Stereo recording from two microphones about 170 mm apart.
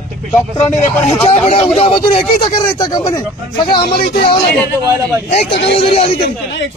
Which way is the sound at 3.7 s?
65° left (ahead or behind).